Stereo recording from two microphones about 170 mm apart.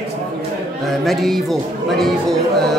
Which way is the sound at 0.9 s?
Centre (ahead or behind).